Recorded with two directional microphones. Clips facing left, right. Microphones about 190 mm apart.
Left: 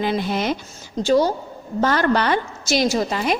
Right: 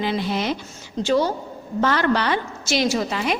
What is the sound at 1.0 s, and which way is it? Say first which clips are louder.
A woman's voice: left 3 dB; 40° left (ahead or behind).